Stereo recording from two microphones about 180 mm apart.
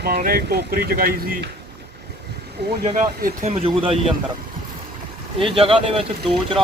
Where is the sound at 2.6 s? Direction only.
55° right (ahead or behind).